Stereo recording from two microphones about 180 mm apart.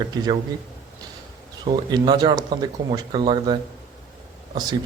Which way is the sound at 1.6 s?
25° right (ahead or behind).